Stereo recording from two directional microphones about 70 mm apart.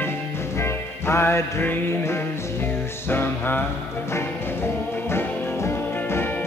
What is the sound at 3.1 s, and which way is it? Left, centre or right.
Music, left.